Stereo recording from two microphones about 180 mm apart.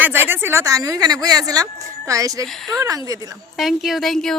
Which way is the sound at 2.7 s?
20° right (ahead or behind).